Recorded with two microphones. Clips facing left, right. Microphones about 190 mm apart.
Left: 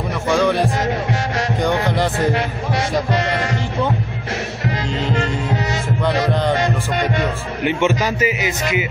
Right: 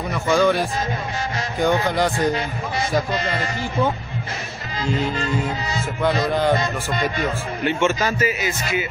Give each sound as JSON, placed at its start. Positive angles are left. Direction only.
{"t": 0.3, "sound": "a man's voice", "side_deg": 0}
{"t": 3.1, "sound": "music", "side_deg": 75}
{"t": 5.1, "sound": "music", "side_deg": 75}
{"t": 7.6, "sound": "a man's voice", "side_deg": 15}